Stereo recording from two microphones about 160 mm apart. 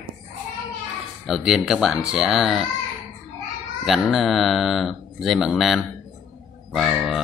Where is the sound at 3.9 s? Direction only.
Centre (ahead or behind).